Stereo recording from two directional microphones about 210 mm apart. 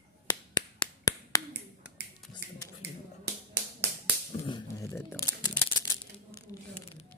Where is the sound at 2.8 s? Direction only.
50° right (ahead or behind).